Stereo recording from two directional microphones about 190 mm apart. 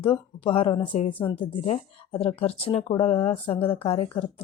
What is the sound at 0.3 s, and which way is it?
Speech, 30° left (ahead or behind).